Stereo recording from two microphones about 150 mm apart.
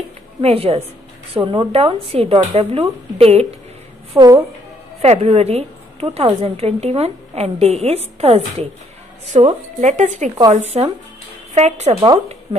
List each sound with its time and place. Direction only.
0.4 s a woman's voice: 45° right (ahead or behind)
4.2 s a woman's voice: 20° right (ahead or behind)
5.0 s a woman's voice: 45° right (ahead or behind)